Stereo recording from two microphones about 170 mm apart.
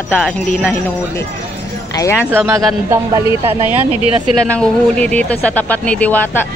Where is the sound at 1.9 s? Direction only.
20° left (ahead or behind).